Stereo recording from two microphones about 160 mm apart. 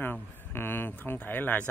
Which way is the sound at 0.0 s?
15° left (ahead or behind).